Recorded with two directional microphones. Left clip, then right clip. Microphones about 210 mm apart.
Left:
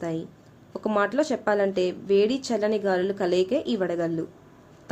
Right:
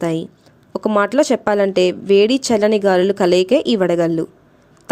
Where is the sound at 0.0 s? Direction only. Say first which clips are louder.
Right 10 dB; 40° right (ahead or behind).